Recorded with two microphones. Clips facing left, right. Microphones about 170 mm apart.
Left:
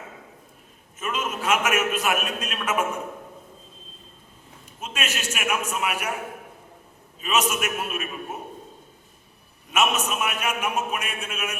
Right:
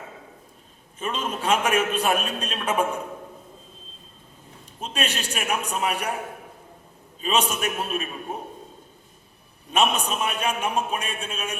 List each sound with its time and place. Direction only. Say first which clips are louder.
0.9 s a man's voice: even; 30° right (ahead or behind)
4.8 s a man's voice: right 2 dB; 35° right (ahead or behind)
7.2 s a man's voice: even; 30° right (ahead or behind)
9.6 s a man's voice: right 1 dB; 30° right (ahead or behind)